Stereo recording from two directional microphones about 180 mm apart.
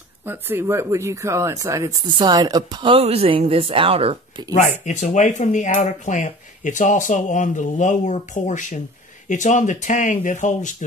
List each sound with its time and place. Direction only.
0.2 s speech: 10° right (ahead or behind); by 4.5 s 30° right (ahead or behind)
4.6 s speech: 40° left (ahead or behind)